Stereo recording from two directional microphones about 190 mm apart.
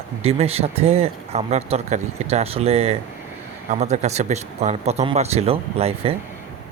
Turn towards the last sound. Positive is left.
turn(degrees=-30)  # may be behind; listen again after turning